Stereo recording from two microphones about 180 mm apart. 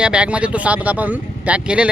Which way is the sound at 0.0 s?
5° right (ahead or behind).